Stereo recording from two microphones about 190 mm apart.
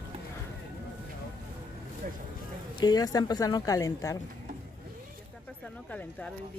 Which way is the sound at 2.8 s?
20° left (ahead or behind).